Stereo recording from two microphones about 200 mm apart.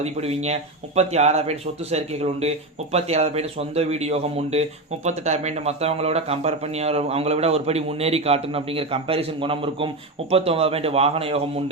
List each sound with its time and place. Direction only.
0.0 s speech: 30° right (ahead or behind)